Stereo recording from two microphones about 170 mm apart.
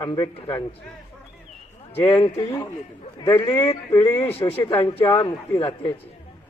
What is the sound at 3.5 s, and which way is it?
Speech, 15° left (ahead or behind).